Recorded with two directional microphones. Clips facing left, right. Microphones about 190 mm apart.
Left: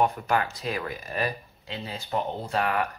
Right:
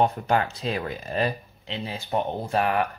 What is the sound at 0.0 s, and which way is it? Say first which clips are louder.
Speech: right 2 dB; 30° right (ahead or behind).